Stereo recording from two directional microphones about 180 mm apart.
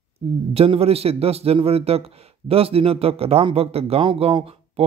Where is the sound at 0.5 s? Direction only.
35° right (ahead or behind).